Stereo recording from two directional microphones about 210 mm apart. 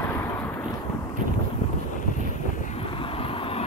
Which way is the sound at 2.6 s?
30° left (ahead or behind).